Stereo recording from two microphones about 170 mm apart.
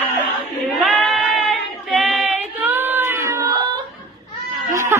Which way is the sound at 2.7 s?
10° right (ahead or behind).